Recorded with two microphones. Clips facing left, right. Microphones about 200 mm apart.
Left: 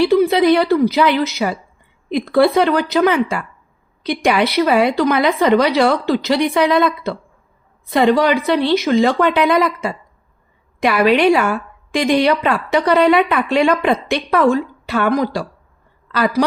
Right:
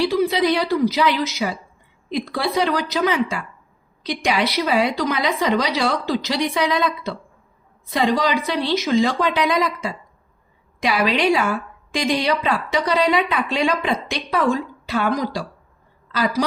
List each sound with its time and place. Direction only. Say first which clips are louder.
0.0 s a woman's voice: left 6 dB; 55° left (ahead or behind)